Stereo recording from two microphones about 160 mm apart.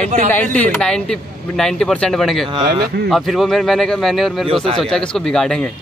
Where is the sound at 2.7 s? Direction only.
70° right (ahead or behind).